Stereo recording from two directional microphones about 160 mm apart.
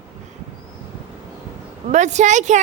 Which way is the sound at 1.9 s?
45° right (ahead or behind).